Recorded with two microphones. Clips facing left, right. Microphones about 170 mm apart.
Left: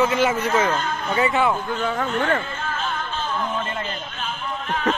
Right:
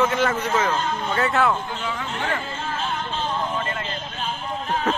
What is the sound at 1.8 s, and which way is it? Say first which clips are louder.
Speech: left 6 dB; 50° left (ahead or behind).